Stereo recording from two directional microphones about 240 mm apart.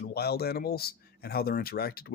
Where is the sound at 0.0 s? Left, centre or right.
Left.